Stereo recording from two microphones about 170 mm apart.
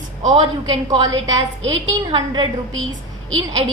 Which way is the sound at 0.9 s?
20° right (ahead or behind).